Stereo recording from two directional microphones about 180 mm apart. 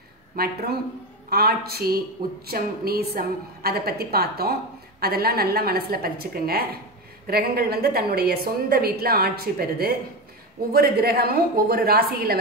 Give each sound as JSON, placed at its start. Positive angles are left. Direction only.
{"t": 0.4, "sound": "a woman's voice", "side_deg": -55}